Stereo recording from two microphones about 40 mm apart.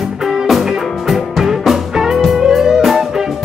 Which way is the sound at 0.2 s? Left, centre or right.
Centre.